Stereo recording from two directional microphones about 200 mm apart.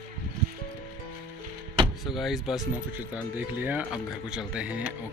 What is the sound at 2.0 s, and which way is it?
Speech, centre (ahead or behind).